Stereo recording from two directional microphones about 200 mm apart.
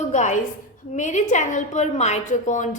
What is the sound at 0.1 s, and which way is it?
A woman's voice, 35° left (ahead or behind).